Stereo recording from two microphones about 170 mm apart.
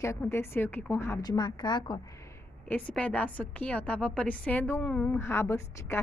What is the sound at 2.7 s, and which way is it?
A woman's voice, 10° left (ahead or behind).